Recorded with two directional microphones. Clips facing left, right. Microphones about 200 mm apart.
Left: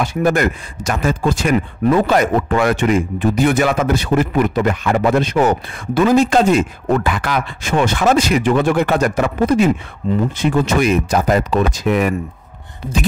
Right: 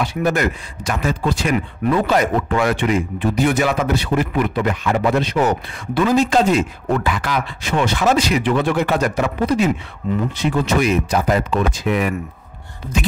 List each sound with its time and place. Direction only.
0.0 s speech: 50° left (ahead or behind)
12.8 s beatboxing: 15° left (ahead or behind)